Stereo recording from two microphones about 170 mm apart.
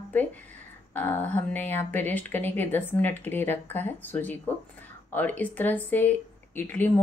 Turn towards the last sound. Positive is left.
turn(degrees=10)  # may be behind; listen again after turning